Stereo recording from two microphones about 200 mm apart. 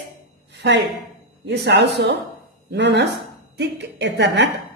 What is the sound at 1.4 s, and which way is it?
A woman's voice, 60° right (ahead or behind).